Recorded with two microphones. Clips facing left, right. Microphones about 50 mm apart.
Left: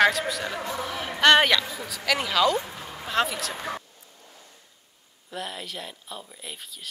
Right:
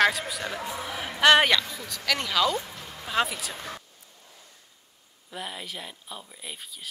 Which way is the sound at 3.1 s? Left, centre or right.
Centre.